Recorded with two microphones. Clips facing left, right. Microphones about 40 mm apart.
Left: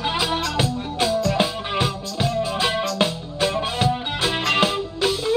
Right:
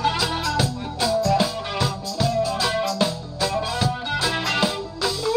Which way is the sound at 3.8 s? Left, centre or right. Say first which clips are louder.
Left 1 dB; left.